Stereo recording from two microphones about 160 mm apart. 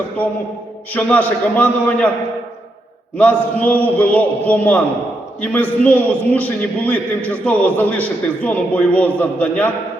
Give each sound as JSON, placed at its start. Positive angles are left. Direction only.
{"t": 0.9, "sound": "a man's voice", "side_deg": 10}
{"t": 3.2, "sound": "a man's voice", "side_deg": 10}